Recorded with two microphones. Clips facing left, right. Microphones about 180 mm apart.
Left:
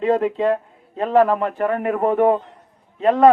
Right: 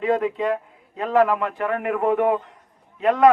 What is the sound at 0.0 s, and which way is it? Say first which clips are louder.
A man's voice: left 3 dB; 35° left (ahead or behind).